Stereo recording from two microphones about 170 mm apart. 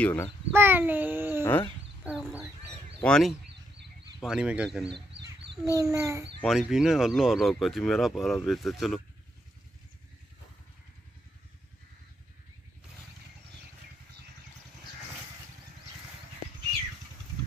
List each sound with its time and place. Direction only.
0.0 s a child's voice: 10° left (ahead or behind)
0.5 s speech: 10° right (ahead or behind)
1.4 s a child's voice: 15° left (ahead or behind)
2.0 s a sound: centre (ahead or behind)
3.0 s speech: 5° left (ahead or behind)
5.1 s a sound: 90° right
5.8 s speech: 20° right (ahead or behind)
6.4 s speech: centre (ahead or behind)